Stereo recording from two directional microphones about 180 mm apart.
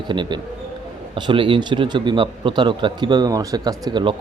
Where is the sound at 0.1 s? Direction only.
25° right (ahead or behind).